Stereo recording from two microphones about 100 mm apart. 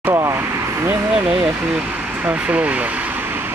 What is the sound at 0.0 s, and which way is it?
Vehicle, 25° right (ahead or behind).